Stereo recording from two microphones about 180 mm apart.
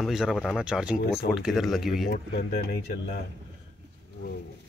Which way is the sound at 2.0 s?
65° left (ahead or behind).